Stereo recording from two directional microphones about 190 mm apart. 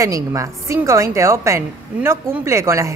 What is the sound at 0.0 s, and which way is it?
A woman's voice, 15° right (ahead or behind).